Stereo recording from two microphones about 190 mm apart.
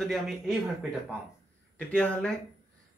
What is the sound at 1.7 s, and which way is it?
Speech, 5° left (ahead or behind).